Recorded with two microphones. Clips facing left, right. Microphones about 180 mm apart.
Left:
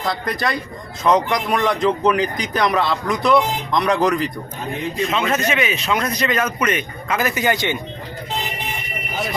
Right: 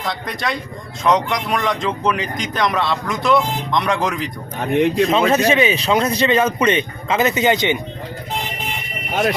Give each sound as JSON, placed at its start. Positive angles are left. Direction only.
{"t": 0.0, "sound": "speech", "side_deg": 0}
{"t": 4.6, "sound": "speech", "side_deg": -70}
{"t": 5.0, "sound": "speech", "side_deg": -35}